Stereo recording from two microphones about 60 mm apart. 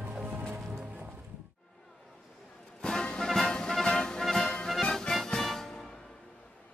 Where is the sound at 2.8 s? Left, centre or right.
Centre.